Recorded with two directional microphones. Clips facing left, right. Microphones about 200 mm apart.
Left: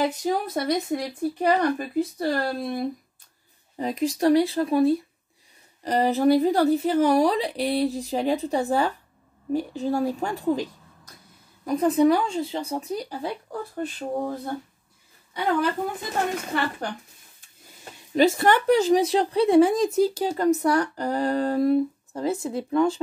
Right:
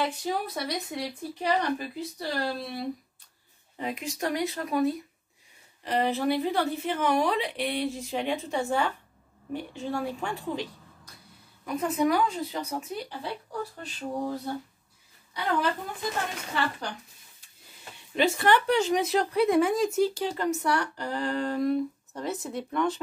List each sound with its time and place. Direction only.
0.0 s speech: 45° left (ahead or behind)
3.7 s speech: 35° left (ahead or behind)
5.8 s speech: 40° left (ahead or behind)
18.1 s speech: 40° left (ahead or behind)